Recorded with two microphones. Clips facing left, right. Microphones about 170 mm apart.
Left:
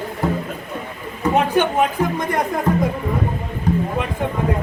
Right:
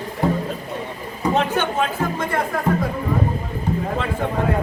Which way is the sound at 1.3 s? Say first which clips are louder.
Left 4 dB; 15° left (ahead or behind).